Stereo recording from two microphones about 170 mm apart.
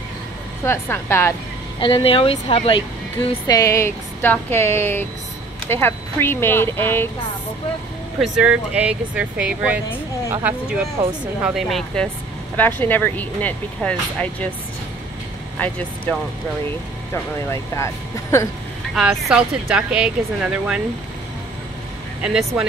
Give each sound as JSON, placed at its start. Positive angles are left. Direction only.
{"t": 0.7, "sound": "speech", "side_deg": 15}
{"t": 1.8, "sound": "speech", "side_deg": 30}
{"t": 3.4, "sound": "speech", "side_deg": 20}
{"t": 8.2, "sound": "speech", "side_deg": -5}
{"t": 17.1, "sound": "speech", "side_deg": 15}
{"t": 18.9, "sound": "speech", "side_deg": -5}
{"t": 22.2, "sound": "speech", "side_deg": -5}